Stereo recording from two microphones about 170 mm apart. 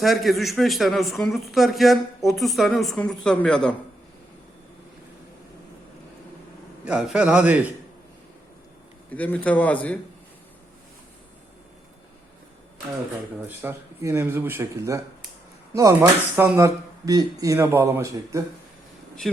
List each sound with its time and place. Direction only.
0.0 s a man's voice: centre (ahead or behind)
6.8 s speech: 5° right (ahead or behind)
9.0 s a man's voice: 10° left (ahead or behind)
13.6 s speech: 15° right (ahead or behind)
19.2 s a man's voice: centre (ahead or behind)